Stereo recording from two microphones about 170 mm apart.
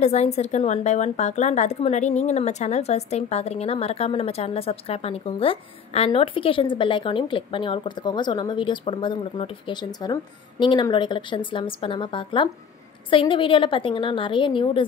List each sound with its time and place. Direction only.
0.0 s a woman's voice: 40° left (ahead or behind)